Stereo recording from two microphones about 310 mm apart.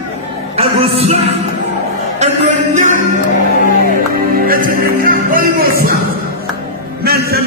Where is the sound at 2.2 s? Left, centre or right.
Right.